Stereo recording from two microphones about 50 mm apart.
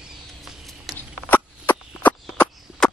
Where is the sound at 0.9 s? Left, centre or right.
Left.